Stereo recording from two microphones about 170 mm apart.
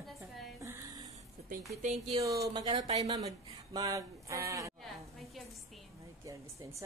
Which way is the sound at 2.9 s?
35° right (ahead or behind).